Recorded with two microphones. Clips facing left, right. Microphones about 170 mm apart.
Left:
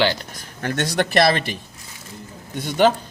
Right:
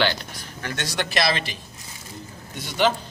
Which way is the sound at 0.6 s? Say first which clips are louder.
Left 7 dB; 50° left (ahead or behind).